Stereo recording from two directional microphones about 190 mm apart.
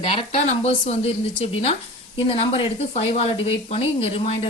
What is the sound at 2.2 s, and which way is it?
Speech, 30° left (ahead or behind).